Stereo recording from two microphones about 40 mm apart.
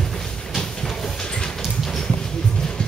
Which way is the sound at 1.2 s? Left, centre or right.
Centre.